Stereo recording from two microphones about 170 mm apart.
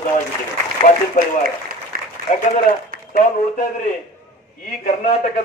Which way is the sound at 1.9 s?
55° right (ahead or behind).